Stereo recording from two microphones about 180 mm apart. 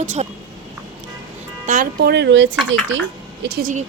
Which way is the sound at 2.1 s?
80° right.